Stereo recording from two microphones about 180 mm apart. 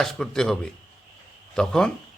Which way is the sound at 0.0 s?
5° left (ahead or behind).